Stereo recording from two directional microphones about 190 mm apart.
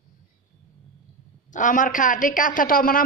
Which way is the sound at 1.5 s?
45° left (ahead or behind).